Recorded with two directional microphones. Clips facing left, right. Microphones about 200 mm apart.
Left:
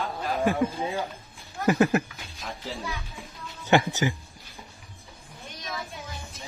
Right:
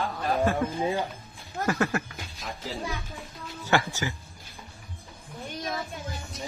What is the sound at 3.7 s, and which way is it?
Speech, 20° left (ahead or behind).